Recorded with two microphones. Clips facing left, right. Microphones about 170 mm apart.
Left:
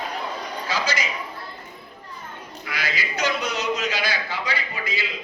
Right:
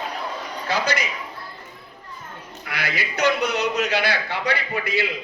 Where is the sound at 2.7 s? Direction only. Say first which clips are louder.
Right 1 dB; 60° right (ahead or behind).